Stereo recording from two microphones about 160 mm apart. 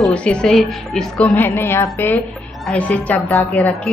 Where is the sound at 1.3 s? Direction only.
15° left (ahead or behind).